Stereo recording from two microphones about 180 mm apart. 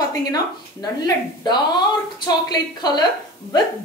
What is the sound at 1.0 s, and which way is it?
A woman's voice, 25° left (ahead or behind).